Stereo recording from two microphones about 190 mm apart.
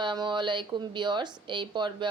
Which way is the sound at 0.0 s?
25° right (ahead or behind).